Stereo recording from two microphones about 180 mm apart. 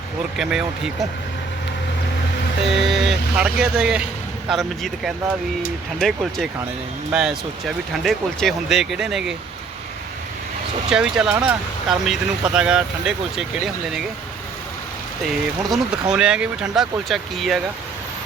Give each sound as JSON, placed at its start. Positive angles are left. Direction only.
{"t": 0.3, "sound": "speech", "side_deg": 0}
{"t": 2.7, "sound": "speech", "side_deg": 0}
{"t": 10.8, "sound": "speech", "side_deg": -5}
{"t": 15.3, "sound": "speech", "side_deg": -5}